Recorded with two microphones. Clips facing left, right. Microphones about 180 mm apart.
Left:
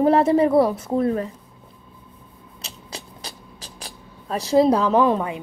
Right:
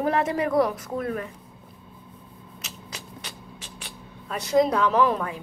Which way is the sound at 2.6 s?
35° left (ahead or behind).